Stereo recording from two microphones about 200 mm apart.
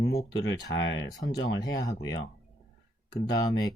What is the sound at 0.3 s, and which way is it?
Speech, 65° left (ahead or behind).